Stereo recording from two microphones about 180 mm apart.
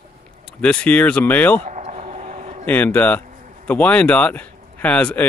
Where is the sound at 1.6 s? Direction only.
40° right (ahead or behind).